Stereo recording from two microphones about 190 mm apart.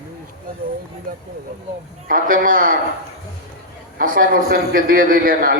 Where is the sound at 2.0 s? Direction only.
45° right (ahead or behind).